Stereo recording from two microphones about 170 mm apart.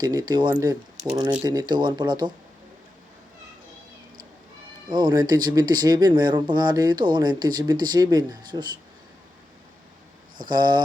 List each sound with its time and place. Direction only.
0.0 s speech: 20° right (ahead or behind)
4.9 s speech: 25° right (ahead or behind)
10.5 s speech: 25° right (ahead or behind)